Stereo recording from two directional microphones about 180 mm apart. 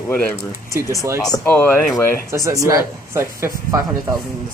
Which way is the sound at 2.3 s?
20° right (ahead or behind).